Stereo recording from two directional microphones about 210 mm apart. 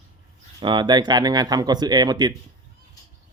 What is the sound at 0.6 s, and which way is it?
Speech, 20° right (ahead or behind).